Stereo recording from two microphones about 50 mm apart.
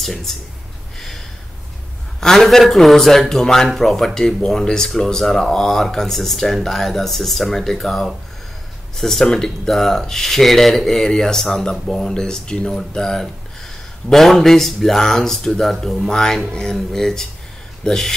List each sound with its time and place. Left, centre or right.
0.0 s a man's voice: centre
0.9 s a sound: centre
2.1 s a man's voice: centre